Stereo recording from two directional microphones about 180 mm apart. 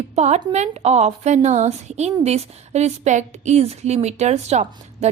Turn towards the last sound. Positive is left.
turn(degrees=-40)  # may be behind; listen again after turning